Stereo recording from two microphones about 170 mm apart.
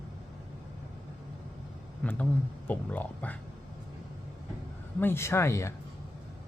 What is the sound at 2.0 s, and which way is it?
Speech, 10° left (ahead or behind).